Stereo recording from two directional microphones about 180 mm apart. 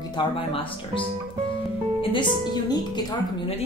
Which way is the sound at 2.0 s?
25° left (ahead or behind).